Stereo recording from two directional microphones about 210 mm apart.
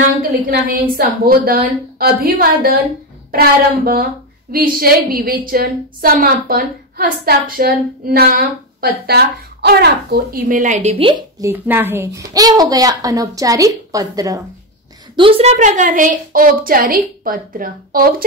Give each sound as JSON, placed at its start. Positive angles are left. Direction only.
{"t": 0.5, "sound": "a woman's voice", "side_deg": -45}
{"t": 11.5, "sound": "a woman's voice", "side_deg": -10}